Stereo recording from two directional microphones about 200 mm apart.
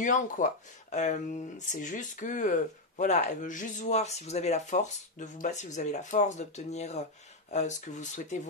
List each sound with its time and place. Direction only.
0.0 s speech: 40° left (ahead or behind)